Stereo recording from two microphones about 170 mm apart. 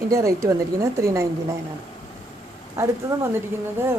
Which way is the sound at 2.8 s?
15° right (ahead or behind).